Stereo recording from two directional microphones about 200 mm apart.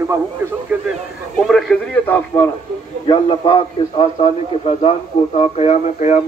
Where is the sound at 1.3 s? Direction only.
5° left (ahead or behind).